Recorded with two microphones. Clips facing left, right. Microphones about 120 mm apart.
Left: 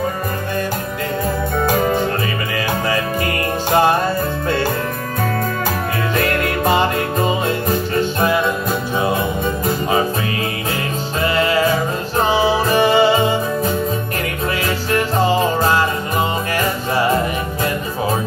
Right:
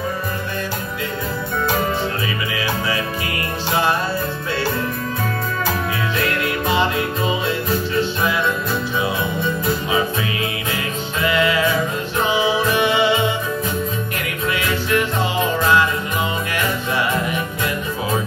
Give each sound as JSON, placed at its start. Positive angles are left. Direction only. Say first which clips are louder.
{"t": 6.1, "sound": "music", "louder": "left 5 dB", "side_deg": 45}
{"t": 14.9, "sound": "music", "louder": "left 5 dB", "side_deg": 40}